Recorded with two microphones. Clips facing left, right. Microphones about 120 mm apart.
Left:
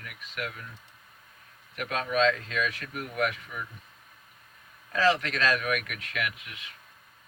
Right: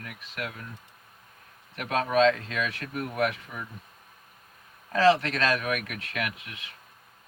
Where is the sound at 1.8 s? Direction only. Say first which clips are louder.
Right 3 dB; 35° right (ahead or behind).